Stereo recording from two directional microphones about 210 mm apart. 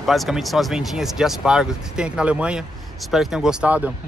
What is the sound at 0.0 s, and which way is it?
Speech, centre (ahead or behind).